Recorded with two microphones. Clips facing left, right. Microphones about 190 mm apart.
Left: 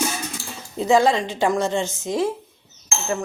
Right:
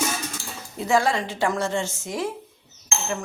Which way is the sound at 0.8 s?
20° left (ahead or behind).